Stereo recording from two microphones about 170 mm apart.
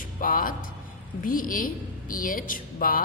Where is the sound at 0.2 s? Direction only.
55° left (ahead or behind).